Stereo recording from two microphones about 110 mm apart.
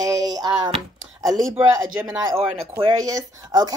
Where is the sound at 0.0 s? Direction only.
35° right (ahead or behind).